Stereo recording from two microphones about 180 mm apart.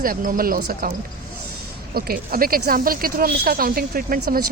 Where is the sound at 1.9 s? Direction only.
55° right (ahead or behind).